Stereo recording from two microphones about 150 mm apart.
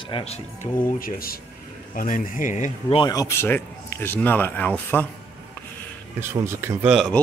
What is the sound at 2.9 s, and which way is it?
Speech, 25° left (ahead or behind).